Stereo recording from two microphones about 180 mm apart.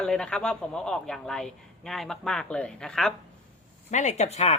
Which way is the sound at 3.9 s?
40° left (ahead or behind).